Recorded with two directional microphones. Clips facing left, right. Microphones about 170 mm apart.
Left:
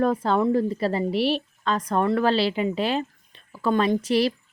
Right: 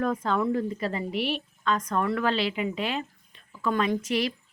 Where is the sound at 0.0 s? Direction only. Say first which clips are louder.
Left 5 dB; 35° left (ahead or behind).